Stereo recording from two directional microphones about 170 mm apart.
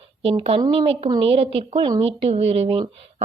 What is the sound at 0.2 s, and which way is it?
A woman's voice, 35° right (ahead or behind).